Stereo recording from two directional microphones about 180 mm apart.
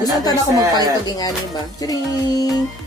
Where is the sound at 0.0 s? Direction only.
20° left (ahead or behind).